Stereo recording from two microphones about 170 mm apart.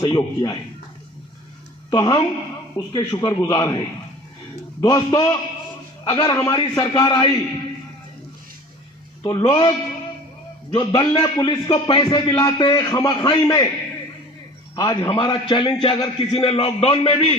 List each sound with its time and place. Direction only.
0.0 s a man's voice: 25° left (ahead or behind)
1.9 s a man's voice: 25° left (ahead or behind)
4.8 s a man's voice: 20° left (ahead or behind)
6.3 s a man's voice: 15° left (ahead or behind)
9.2 s a man's voice: 25° left (ahead or behind)
10.8 s a man's voice: 25° left (ahead or behind)
14.8 s a man's voice: 20° left (ahead or behind); by 17.3 s 35° left (ahead or behind)